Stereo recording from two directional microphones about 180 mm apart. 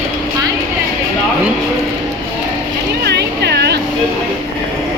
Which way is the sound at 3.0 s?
65° right (ahead or behind).